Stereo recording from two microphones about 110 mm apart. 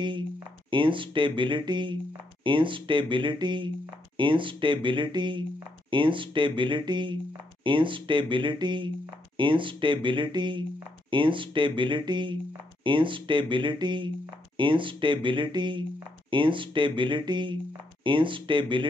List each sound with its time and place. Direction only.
0.7 s speech: 50° right (ahead or behind)